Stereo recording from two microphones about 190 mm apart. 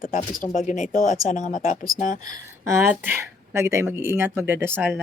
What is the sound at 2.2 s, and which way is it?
Speech, 15° right (ahead or behind).